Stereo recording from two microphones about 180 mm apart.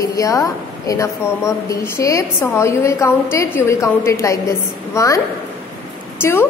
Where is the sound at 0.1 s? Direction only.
20° left (ahead or behind).